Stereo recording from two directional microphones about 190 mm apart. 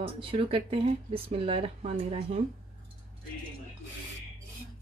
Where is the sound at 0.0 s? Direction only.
30° right (ahead or behind).